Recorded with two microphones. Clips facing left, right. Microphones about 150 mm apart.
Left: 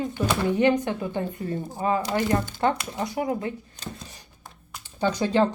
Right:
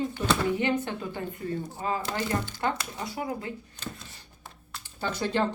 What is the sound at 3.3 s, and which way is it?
Speech, 25° left (ahead or behind).